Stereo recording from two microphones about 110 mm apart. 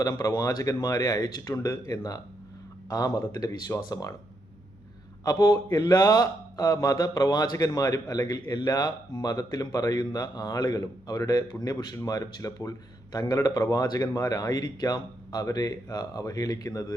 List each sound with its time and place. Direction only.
0.0 s speech: 30° left (ahead or behind)
5.2 s speech: 35° left (ahead or behind)